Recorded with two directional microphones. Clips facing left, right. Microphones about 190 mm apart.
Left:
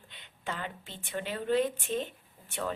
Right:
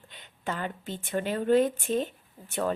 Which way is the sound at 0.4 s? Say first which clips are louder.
Right 5 dB; 45° right (ahead or behind).